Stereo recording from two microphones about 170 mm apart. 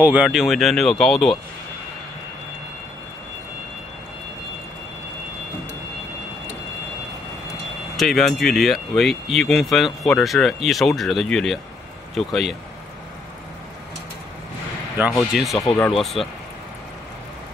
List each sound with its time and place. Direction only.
0.0 s speech: 5° right (ahead or behind)
7.9 s speech: centre (ahead or behind)
15.5 s speech: 20° left (ahead or behind)
16.0 s speech: centre (ahead or behind)